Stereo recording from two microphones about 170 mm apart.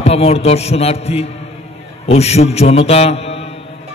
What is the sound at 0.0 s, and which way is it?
A man's voice, 35° left (ahead or behind).